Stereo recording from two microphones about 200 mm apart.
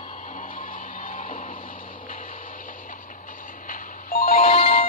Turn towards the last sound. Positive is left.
turn(degrees=45)  # may be behind; listen again after turning